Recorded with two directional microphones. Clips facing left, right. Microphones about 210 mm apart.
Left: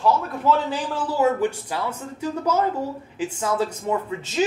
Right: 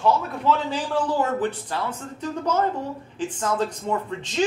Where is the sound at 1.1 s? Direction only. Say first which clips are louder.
Left 3 dB; 10° left (ahead or behind).